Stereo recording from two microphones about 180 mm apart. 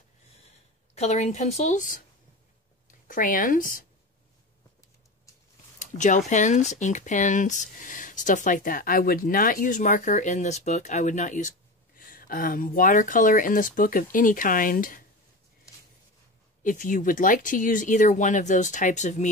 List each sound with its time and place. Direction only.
0.9 s a woman's voice: 40° left (ahead or behind)
5.8 s speech: 45° left (ahead or behind)
16.6 s speech: 45° left (ahead or behind)